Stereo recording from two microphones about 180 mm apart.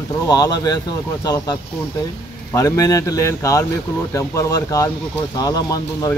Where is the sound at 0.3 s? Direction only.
20° left (ahead or behind).